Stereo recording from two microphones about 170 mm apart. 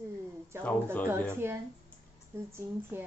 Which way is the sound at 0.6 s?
10° left (ahead or behind).